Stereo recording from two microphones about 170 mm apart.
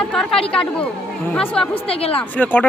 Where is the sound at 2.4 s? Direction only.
10° left (ahead or behind).